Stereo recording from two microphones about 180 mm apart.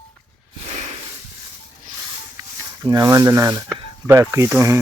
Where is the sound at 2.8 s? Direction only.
20° right (ahead or behind).